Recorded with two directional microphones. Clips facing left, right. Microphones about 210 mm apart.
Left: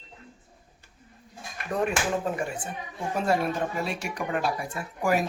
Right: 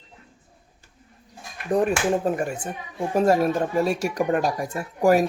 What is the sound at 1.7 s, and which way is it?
Speech, 40° right (ahead or behind).